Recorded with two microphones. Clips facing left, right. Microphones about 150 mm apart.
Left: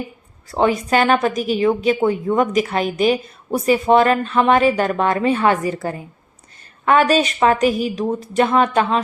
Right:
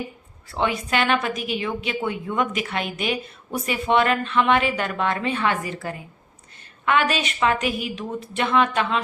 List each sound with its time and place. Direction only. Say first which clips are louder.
0.5 s a woman's voice: left 7 dB; 40° left (ahead or behind)